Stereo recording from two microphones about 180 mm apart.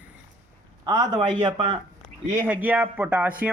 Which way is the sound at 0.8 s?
25° right (ahead or behind).